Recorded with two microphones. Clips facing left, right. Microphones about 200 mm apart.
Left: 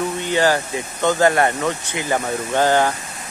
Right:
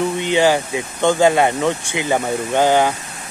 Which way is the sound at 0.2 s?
20° right (ahead or behind).